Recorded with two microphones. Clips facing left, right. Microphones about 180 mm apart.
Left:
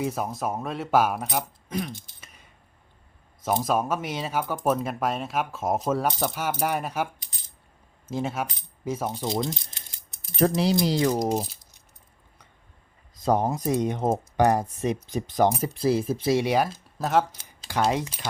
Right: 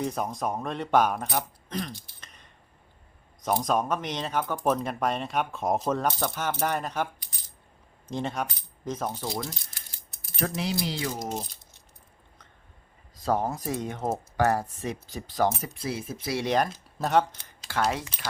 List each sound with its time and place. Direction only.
0.0 s speech: 5° left (ahead or behind)
2.2 s a sound: 5° left (ahead or behind)
3.6 s speech: 5° left (ahead or behind)
9.0 s speech: 20° left (ahead or behind)
10.3 s speech: 35° left (ahead or behind)
13.2 s speech: 20° left (ahead or behind)
15.7 s speech: 35° left (ahead or behind)
16.4 s speech: 5° left (ahead or behind)